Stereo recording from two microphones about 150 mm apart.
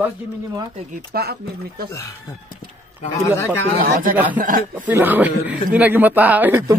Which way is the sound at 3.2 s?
15° left (ahead or behind).